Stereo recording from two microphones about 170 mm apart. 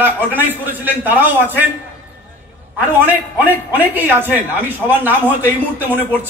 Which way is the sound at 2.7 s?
10° right (ahead or behind).